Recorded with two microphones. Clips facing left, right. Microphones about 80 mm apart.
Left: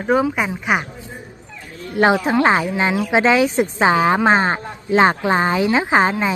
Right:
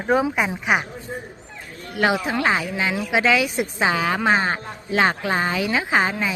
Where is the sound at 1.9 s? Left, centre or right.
Left.